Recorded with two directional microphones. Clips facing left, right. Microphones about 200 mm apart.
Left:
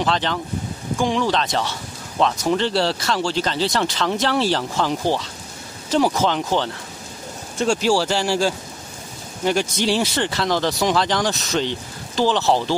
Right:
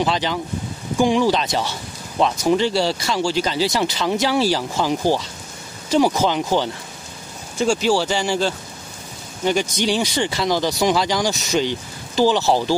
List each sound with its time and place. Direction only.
0.0 s speech: 5° right (ahead or behind)